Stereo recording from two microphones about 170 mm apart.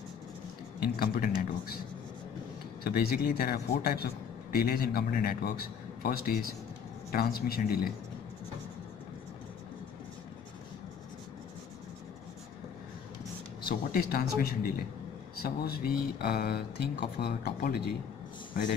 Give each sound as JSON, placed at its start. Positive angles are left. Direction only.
{"t": 0.7, "sound": "a man's voice", "side_deg": 60}
{"t": 2.8, "sound": "a man's voice", "side_deg": 65}
{"t": 13.7, "sound": "a man's voice", "side_deg": 60}